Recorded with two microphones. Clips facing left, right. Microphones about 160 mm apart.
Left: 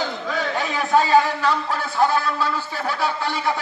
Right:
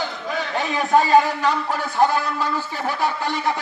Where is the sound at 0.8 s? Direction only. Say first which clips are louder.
Right 1 dB; 20° right (ahead or behind).